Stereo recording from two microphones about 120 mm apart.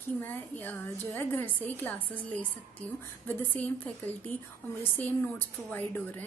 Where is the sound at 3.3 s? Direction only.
15° left (ahead or behind).